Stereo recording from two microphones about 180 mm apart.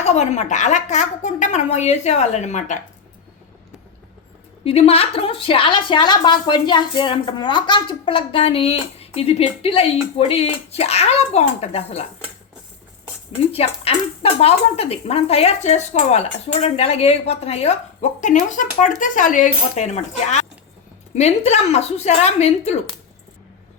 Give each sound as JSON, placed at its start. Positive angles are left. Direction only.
{"t": 0.0, "sound": "a woman's voice", "side_deg": 40}
{"t": 4.6, "sound": "a woman's voice", "side_deg": 35}
{"t": 13.5, "sound": "a woman's voice", "side_deg": 35}